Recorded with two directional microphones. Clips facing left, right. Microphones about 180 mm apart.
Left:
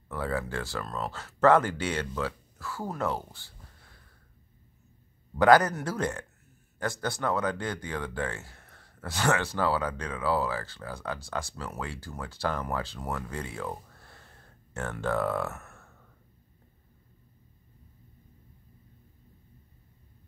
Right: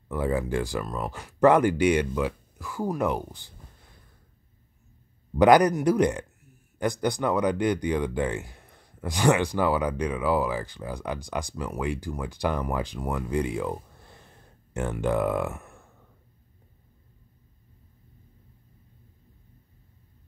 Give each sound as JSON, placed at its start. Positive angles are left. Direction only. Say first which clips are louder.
{"t": 0.1, "sound": "speech", "louder": "right 6 dB", "side_deg": -15}
{"t": 5.4, "sound": "speech", "louder": "right 3 dB", "side_deg": -15}